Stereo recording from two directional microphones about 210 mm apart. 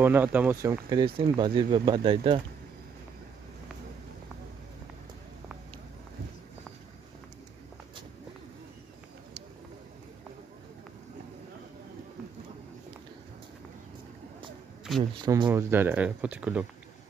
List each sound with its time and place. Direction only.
0.0 s speech: 10° right (ahead or behind)
15.2 s speech: 20° right (ahead or behind)